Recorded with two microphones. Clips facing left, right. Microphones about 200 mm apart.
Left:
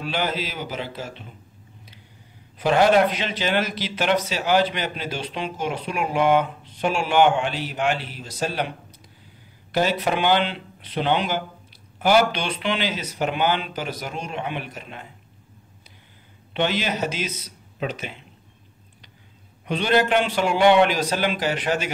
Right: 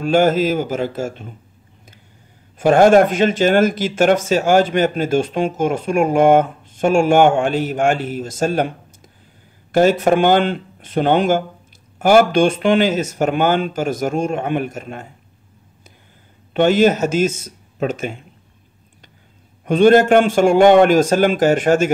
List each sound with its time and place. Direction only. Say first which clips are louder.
0.0 s speech: right 12 dB; 45° right (ahead or behind)
2.6 s speech: right 7 dB; 50° right (ahead or behind)
16.5 s speech: right 11 dB; 50° right (ahead or behind)
19.6 s speech: right 10 dB; 50° right (ahead or behind)